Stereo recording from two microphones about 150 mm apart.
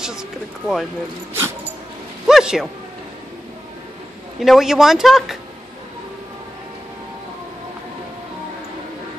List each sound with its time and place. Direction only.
0.0 s speech: 5° right (ahead or behind)
1.3 s dog: 15° right (ahead or behind)
2.2 s a man's voice: 5° right (ahead or behind)
4.4 s speech: centre (ahead or behind)